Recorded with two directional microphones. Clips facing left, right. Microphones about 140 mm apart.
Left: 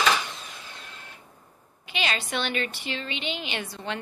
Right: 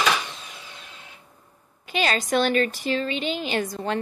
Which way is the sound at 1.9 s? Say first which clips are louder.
Right 6 dB; 40° right (ahead or behind).